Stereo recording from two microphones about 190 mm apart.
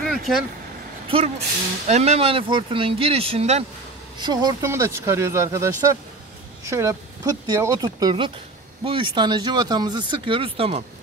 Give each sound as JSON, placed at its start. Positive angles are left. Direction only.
{"t": 0.0, "sound": "vehicle", "side_deg": 0}
{"t": 1.0, "sound": "speech", "side_deg": -30}
{"t": 4.2, "sound": "speech", "side_deg": -20}